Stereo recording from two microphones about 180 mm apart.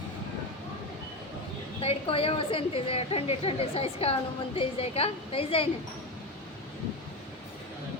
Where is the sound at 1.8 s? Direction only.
30° left (ahead or behind).